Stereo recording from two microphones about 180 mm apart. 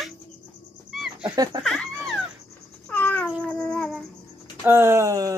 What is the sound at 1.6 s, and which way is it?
Speech, centre (ahead or behind).